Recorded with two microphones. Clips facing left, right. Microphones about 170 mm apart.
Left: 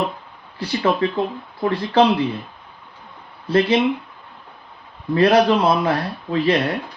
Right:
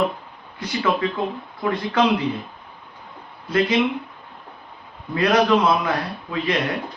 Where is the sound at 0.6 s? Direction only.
30° left (ahead or behind).